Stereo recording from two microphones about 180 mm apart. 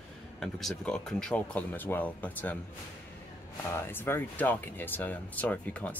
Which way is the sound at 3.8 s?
15° left (ahead or behind).